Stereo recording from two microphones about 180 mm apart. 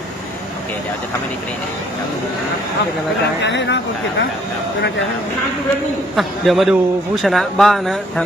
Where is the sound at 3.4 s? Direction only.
80° left.